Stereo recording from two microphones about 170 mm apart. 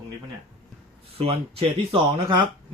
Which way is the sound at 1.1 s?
35° right (ahead or behind).